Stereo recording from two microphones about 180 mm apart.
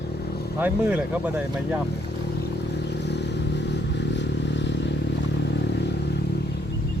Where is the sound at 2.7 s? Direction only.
70° left (ahead or behind).